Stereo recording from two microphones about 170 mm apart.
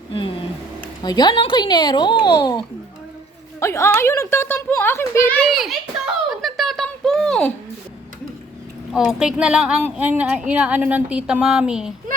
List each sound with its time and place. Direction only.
0.1 s a child's voice: 30° left (ahead or behind); by 5.5 s 15° left (ahead or behind)
5.5 s speech: centre (ahead or behind)
6.3 s a sound: centre (ahead or behind)
8.9 s a woman's voice: centre (ahead or behind)